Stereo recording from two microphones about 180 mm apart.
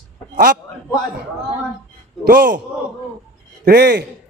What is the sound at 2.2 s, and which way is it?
Speech, 65° right (ahead or behind).